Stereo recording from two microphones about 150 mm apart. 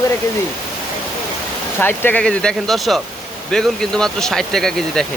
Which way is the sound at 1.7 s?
15° left (ahead or behind).